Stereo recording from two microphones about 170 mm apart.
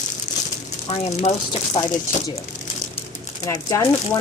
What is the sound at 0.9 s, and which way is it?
Speech, 40° left (ahead or behind).